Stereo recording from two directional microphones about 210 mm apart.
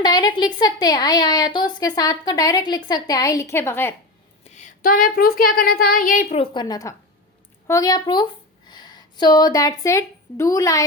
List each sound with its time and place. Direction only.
0.0 s a woman's voice: 20° left (ahead or behind)
4.4 s a woman's voice: 35° left (ahead or behind); by 10.8 s 15° left (ahead or behind)